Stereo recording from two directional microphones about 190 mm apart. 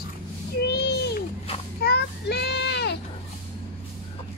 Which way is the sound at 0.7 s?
60° left (ahead or behind).